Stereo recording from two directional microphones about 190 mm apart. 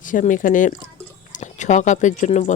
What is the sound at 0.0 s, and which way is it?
Speech, 45° left (ahead or behind).